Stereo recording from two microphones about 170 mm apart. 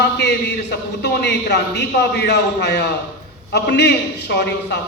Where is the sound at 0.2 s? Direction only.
75° left (ahead or behind).